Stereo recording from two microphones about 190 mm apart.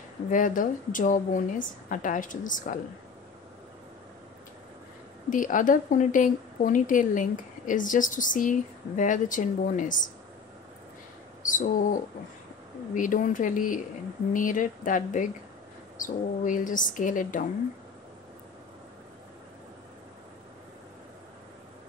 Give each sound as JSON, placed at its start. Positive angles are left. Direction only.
{"t": 0.3, "sound": "a woman's voice", "side_deg": 45}
{"t": 5.3, "sound": "a woman's voice", "side_deg": 45}
{"t": 11.4, "sound": "a woman's voice", "side_deg": 45}